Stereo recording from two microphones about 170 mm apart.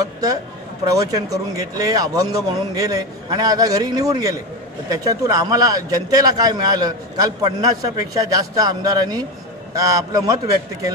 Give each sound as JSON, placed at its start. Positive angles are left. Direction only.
{"t": 0.8, "sound": "a man's voice", "side_deg": -20}